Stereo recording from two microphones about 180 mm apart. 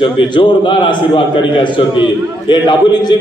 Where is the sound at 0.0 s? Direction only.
30° left (ahead or behind).